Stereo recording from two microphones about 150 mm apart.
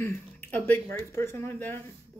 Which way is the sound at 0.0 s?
15° left (ahead or behind).